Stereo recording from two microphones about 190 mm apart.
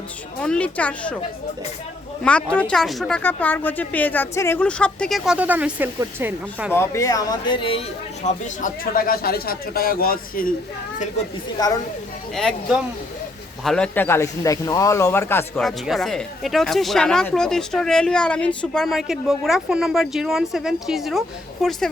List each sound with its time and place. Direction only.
0.4 s speech: 5° left (ahead or behind)
2.2 s speech: 5° left (ahead or behind); by 6.7 s 10° right (ahead or behind)
6.7 s speech: 15° left (ahead or behind)
8.2 s speech: 40° left (ahead or behind)
11.6 s speech: 20° left (ahead or behind)
12.3 s speech: centre (ahead or behind)
15.6 s speech: centre (ahead or behind)